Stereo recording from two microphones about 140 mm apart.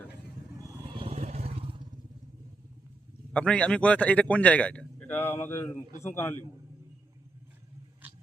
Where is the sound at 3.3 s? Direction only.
10° left (ahead or behind).